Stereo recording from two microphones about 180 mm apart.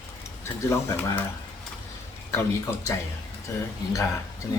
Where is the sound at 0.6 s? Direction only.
15° left (ahead or behind).